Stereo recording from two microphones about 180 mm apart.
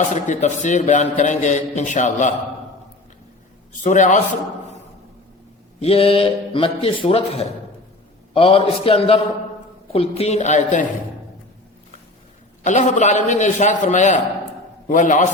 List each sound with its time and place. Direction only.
0.1 s a man's voice: 40° left (ahead or behind)
3.8 s a man's voice: 40° left (ahead or behind)
5.8 s a man's voice: 30° left (ahead or behind)
12.6 s a man's voice: 45° left (ahead or behind)